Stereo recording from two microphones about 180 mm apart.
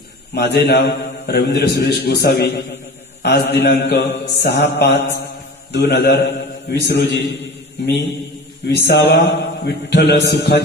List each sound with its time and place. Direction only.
0.3 s a man's voice: 65° left (ahead or behind)
5.7 s mantra: 65° left (ahead or behind)